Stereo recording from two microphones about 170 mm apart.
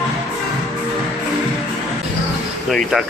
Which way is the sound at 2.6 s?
Centre (ahead or behind).